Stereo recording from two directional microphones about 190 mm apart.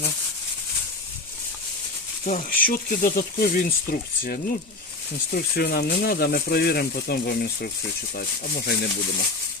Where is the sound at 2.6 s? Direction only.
50° left (ahead or behind).